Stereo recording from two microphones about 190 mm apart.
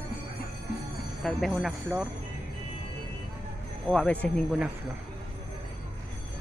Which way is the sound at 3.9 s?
5° left (ahead or behind).